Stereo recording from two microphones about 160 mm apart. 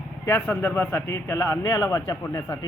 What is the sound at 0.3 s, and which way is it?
A man's voice, 10° left (ahead or behind).